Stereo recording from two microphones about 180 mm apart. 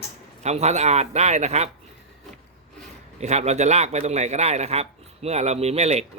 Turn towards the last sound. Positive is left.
turn(degrees=-35)  # may be behind; listen again after turning